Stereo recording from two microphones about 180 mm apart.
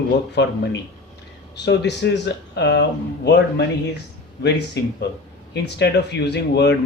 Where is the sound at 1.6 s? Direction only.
70° left (ahead or behind).